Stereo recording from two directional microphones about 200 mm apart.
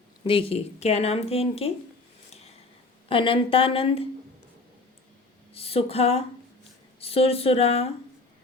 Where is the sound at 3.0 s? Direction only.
25° left (ahead or behind).